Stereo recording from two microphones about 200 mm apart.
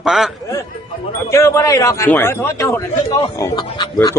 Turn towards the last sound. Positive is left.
turn(degrees=20)  # may be behind; listen again after turning